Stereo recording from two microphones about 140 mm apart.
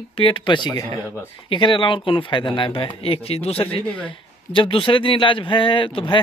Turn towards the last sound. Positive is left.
turn(degrees=35)  # may be behind; listen again after turning